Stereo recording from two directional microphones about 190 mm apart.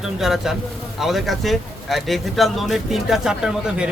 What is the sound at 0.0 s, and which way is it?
Speech, centre (ahead or behind).